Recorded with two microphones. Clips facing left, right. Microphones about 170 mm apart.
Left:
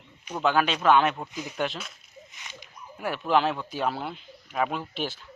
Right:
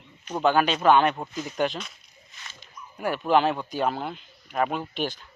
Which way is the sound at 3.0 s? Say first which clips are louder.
Right 2 dB; centre (ahead or behind).